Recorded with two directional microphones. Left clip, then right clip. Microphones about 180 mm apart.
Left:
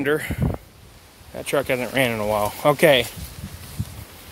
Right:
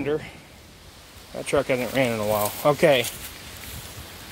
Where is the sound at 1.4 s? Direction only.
20° left (ahead or behind); by 3.0 s 40° left (ahead or behind).